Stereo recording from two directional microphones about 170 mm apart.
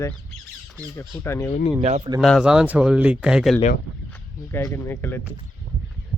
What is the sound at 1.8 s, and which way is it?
Speech, 40° right (ahead or behind).